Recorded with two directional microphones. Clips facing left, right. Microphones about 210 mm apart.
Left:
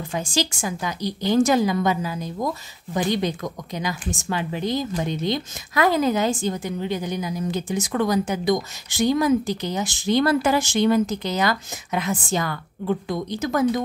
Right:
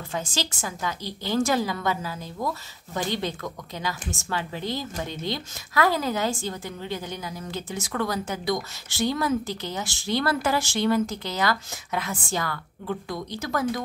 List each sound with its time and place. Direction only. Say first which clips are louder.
0.1 s speech: left 5 dB; 15° left (ahead or behind)